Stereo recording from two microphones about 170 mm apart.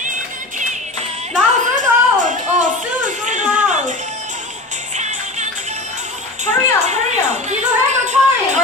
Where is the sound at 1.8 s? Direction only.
50° right (ahead or behind).